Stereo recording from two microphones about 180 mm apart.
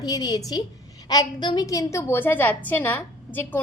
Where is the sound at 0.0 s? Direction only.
20° left (ahead or behind).